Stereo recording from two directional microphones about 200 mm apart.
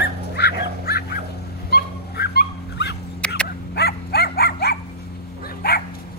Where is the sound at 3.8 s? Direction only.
55° left (ahead or behind).